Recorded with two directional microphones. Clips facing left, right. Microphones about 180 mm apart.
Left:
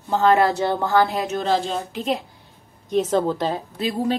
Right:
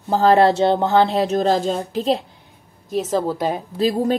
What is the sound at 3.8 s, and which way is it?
Speech, 40° right (ahead or behind).